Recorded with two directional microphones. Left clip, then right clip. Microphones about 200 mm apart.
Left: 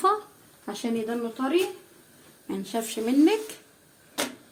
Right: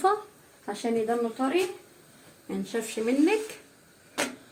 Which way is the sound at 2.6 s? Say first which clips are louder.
Even; 45° left (ahead or behind).